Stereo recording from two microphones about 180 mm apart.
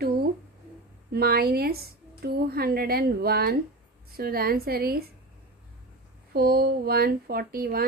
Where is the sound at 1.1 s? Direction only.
55° right (ahead or behind).